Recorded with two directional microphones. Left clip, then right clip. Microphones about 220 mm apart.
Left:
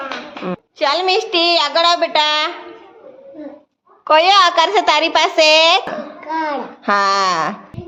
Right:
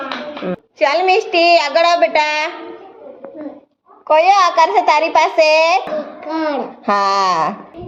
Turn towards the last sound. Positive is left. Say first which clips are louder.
# right 1 dB
turn(degrees=5)  # may be behind; listen again after turning